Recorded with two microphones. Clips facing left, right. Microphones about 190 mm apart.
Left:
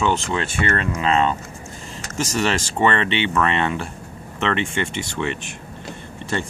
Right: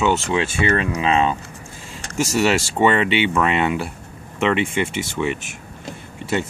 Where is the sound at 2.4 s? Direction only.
10° right (ahead or behind).